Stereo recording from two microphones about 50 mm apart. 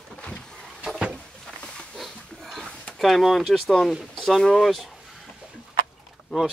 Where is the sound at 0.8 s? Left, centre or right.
Centre.